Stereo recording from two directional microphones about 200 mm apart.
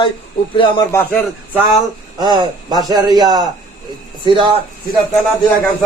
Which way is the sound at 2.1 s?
20° right (ahead or behind).